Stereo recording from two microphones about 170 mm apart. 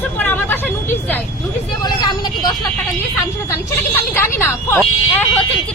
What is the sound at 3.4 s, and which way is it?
A woman's voice, 15° left (ahead or behind).